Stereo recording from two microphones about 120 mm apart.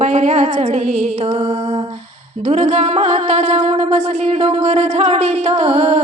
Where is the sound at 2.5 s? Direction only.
65° right (ahead or behind).